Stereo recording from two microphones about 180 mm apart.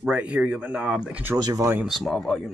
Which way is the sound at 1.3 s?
20° right (ahead or behind).